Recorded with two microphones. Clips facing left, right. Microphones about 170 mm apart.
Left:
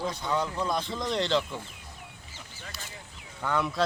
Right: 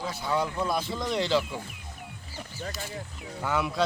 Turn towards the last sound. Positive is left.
turn(degrees=-5)  # may be behind; listen again after turning